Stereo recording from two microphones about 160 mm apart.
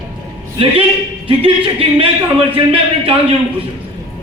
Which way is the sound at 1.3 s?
35° right (ahead or behind).